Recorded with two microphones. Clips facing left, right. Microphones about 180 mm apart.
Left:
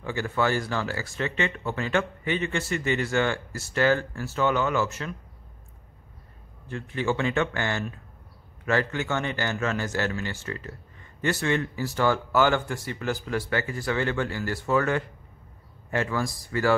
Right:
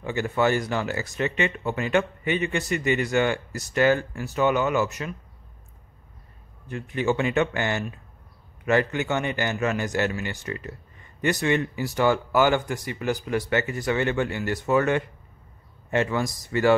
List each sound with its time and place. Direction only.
0.0 s speech: 20° right (ahead or behind)
6.7 s a man's voice: 15° right (ahead or behind)